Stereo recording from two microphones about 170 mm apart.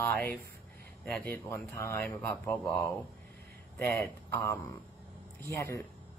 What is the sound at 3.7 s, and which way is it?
Speech, 10° left (ahead or behind).